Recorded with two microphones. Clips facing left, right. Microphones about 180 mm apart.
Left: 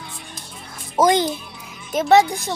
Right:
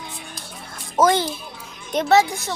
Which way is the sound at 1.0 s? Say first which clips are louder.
Left 1 dB; 15° left (ahead or behind).